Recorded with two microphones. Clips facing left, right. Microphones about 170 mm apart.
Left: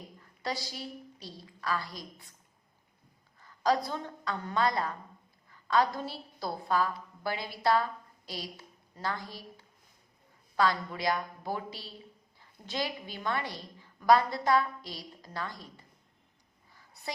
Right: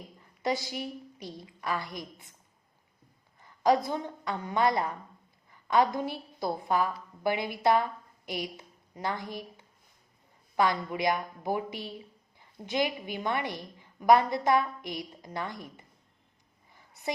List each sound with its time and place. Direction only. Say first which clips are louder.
0.2 s a woman's voice: right 6 dB; 20° right (ahead or behind)
3.4 s a woman's voice: right 3 dB; 20° right (ahead or behind)
16.7 s a sound: right 1 dB; 20° right (ahead or behind)